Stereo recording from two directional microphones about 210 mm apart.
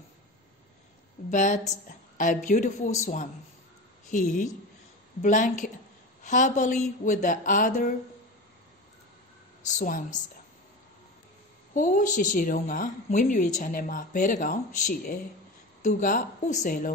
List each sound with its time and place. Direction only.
1.3 s a woman's voice: 35° left (ahead or behind)
9.7 s a woman's voice: 40° left (ahead or behind)
11.7 s a woman's voice: 40° left (ahead or behind)